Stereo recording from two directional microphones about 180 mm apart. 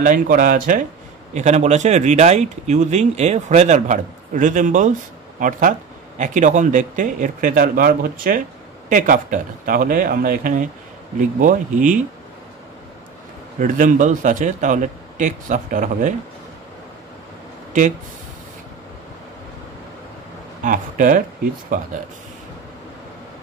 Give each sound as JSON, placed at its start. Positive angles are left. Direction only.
{"t": 0.0, "sound": "speech", "side_deg": -50}
{"t": 13.6, "sound": "speech", "side_deg": -45}
{"t": 20.6, "sound": "speech", "side_deg": -50}